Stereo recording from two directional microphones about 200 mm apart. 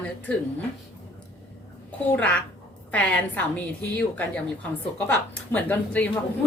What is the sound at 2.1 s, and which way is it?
A woman's voice, 5° left (ahead or behind).